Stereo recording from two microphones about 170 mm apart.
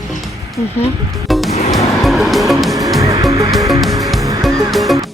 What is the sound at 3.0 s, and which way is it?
Vehicle, 20° right (ahead or behind).